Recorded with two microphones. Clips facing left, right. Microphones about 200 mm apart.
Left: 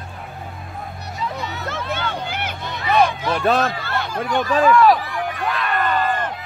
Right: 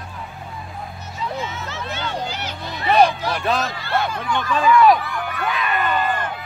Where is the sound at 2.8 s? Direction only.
35° right (ahead or behind).